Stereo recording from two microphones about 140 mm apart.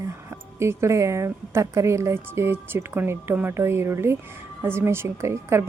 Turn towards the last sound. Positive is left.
turn(degrees=-20)  # may be behind; listen again after turning